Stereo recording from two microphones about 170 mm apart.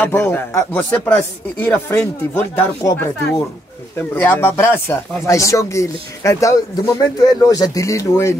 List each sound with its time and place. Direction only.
0.0 s speech: 15° left (ahead or behind)